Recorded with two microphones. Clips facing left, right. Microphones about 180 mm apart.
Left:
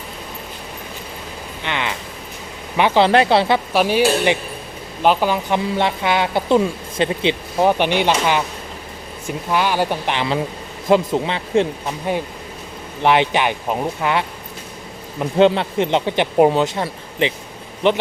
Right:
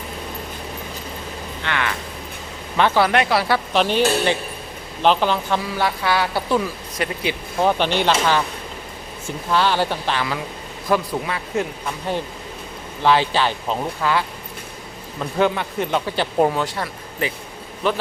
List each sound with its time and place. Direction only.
1.6 s speech: 20° left (ahead or behind)
3.1 s speech: 30° left (ahead or behind)
3.7 s speech: 10° left (ahead or behind)
5.7 s speech: 20° left (ahead or behind)
9.5 s speech: 15° left (ahead or behind)
13.0 s speech: 20° left (ahead or behind)